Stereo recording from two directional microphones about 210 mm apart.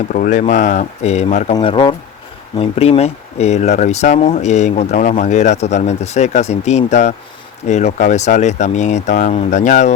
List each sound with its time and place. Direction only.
0.1 s speech: 40° left (ahead or behind)